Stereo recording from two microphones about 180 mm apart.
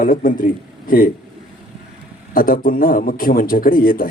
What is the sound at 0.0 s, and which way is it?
A man's voice, 50° left (ahead or behind).